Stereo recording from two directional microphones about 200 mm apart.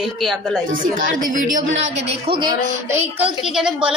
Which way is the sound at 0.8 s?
40° right (ahead or behind).